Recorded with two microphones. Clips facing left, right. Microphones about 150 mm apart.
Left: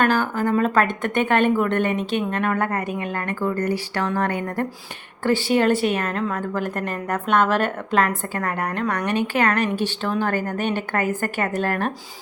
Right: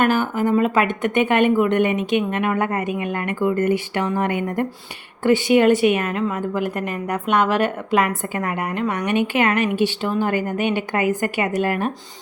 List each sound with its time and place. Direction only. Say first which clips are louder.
0.0 s a woman's voice: right 2 dB; 15° right (ahead or behind)